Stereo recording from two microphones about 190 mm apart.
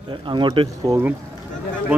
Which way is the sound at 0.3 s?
25° right (ahead or behind).